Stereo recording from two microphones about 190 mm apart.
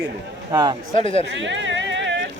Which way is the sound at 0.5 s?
20° right (ahead or behind).